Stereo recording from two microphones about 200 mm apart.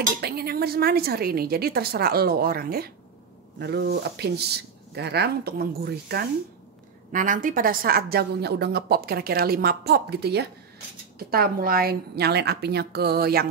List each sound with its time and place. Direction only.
0.2 s a woman's voice: 50° right (ahead or behind)
7.1 s a woman's voice: 40° right (ahead or behind)